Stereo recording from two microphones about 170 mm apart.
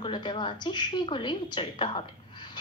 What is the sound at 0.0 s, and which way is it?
A woman's voice, 30° left (ahead or behind).